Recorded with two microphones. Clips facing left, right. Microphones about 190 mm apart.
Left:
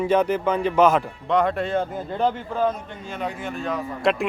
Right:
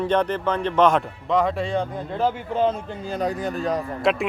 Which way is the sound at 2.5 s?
25° right (ahead or behind).